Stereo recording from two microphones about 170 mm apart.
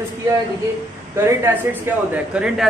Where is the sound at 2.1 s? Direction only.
5° right (ahead or behind).